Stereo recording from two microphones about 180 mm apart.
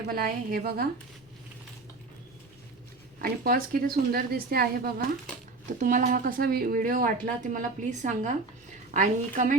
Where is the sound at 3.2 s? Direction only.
55° right (ahead or behind).